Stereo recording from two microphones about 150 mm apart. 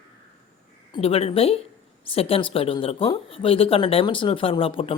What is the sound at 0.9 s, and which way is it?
Speech, 40° left (ahead or behind).